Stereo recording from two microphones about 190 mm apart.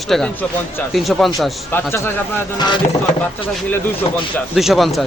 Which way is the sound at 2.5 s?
25° left (ahead or behind).